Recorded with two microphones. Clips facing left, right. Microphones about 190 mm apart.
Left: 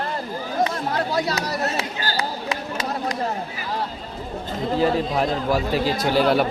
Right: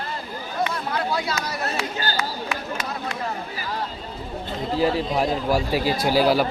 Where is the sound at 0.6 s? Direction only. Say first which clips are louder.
Left 2 dB; 35° left (ahead or behind).